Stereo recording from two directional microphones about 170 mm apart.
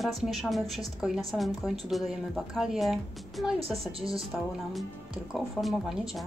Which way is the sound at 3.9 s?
35° right (ahead or behind).